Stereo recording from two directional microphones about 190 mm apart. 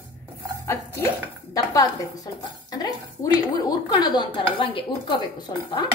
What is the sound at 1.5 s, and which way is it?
Speech, 20° left (ahead or behind).